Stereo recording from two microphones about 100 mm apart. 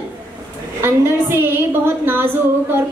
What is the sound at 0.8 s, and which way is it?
Speech, 20° right (ahead or behind).